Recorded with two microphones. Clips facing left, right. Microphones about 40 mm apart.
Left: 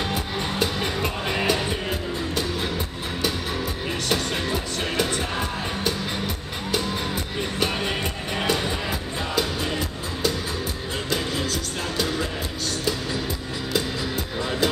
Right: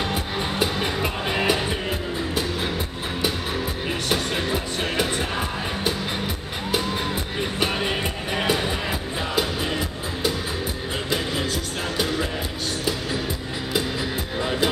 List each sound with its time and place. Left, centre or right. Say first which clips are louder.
0.0 s music: right 1 dB; centre
4.1 s music: right 1 dB; centre
14.4 s music: right 1 dB; centre